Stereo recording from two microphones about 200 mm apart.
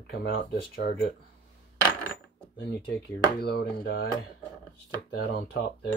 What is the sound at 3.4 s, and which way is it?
Speech, 55° left (ahead or behind).